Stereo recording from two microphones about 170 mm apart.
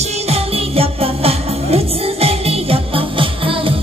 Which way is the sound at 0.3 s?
35° right (ahead or behind).